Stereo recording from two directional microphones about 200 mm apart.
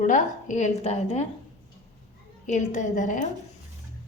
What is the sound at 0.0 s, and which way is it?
A woman's voice, 40° left (ahead or behind).